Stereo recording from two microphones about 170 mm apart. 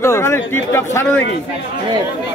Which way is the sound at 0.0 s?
15° left (ahead or behind).